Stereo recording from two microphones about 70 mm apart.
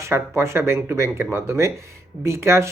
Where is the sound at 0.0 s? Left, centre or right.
Right.